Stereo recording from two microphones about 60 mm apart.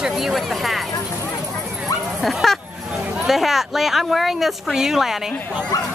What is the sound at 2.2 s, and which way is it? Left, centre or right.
A woman's voice, centre.